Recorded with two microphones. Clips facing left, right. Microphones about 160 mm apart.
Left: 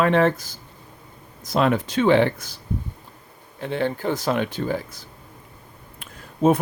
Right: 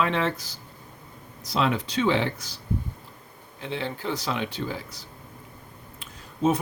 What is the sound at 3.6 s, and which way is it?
Speech, 50° left (ahead or behind).